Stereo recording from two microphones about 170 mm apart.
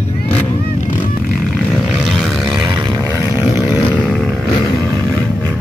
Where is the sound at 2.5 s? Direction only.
25° right (ahead or behind).